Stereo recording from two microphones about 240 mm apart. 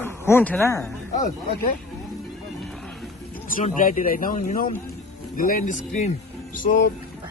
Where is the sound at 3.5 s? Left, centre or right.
Left.